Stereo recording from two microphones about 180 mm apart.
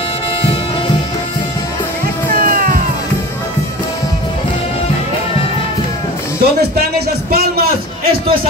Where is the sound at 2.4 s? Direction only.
50° right (ahead or behind).